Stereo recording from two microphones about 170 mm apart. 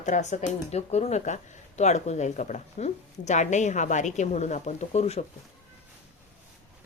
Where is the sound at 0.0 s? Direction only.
45° left (ahead or behind).